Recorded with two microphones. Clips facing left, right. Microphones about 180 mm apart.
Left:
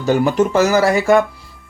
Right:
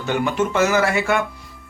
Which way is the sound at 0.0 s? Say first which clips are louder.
Left 6 dB; 40° left (ahead or behind).